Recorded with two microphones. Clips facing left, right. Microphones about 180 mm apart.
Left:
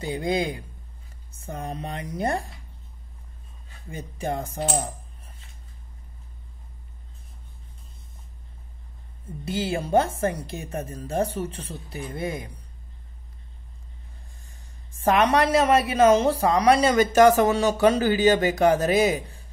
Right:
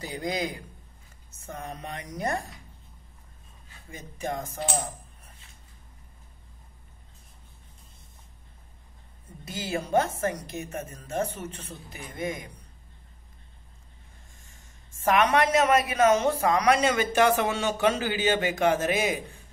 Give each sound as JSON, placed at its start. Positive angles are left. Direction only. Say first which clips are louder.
{"t": 0.0, "sound": "a man's voice", "louder": "left 5 dB", "side_deg": 25}
{"t": 3.9, "sound": "a woman's voice", "louder": "left 4 dB", "side_deg": 30}
{"t": 9.4, "sound": "a woman's voice", "louder": "left 5 dB", "side_deg": 30}
{"t": 15.0, "sound": "a woman's voice", "louder": "left 2 dB", "side_deg": 30}